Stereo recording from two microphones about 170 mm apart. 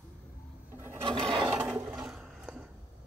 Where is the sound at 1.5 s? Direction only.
10° right (ahead or behind).